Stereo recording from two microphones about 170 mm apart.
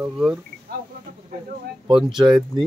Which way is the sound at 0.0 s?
5° right (ahead or behind).